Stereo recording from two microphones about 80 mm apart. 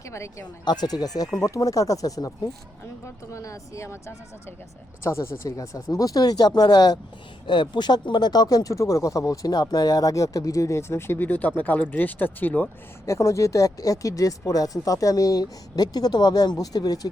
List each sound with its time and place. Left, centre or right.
0.1 s speech: left
0.6 s speech: left
7.4 s speech: left
13.1 s speech: left